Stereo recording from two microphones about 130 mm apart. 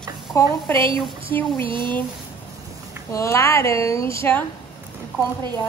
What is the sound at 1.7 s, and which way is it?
Speech, 40° right (ahead or behind).